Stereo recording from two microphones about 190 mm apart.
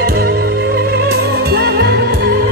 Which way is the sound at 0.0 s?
55° right (ahead or behind).